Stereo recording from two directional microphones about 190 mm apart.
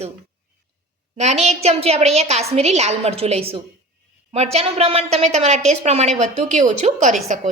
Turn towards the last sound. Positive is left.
turn(degrees=-35)  # may be behind; listen again after turning